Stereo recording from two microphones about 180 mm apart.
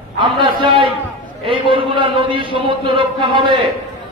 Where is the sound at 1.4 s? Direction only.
30° right (ahead or behind).